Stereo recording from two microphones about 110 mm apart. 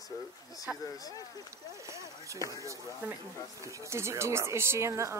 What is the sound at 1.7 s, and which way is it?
Speech, 30° right (ahead or behind).